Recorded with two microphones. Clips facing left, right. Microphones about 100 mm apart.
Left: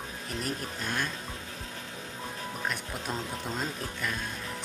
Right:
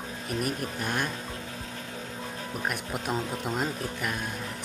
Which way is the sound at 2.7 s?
10° right (ahead or behind).